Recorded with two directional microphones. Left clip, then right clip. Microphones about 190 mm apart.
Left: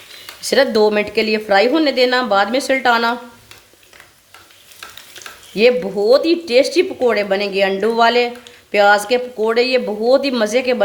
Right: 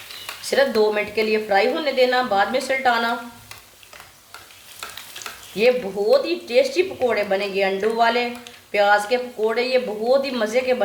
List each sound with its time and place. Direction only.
0.4 s speech: 55° left (ahead or behind)
5.5 s speech: 55° left (ahead or behind)